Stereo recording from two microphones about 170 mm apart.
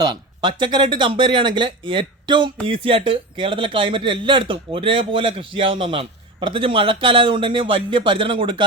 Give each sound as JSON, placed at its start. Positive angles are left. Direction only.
{"t": 0.4, "sound": "speech", "side_deg": -25}